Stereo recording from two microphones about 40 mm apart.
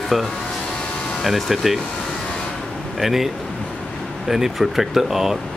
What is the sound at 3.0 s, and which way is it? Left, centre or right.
Speech, centre.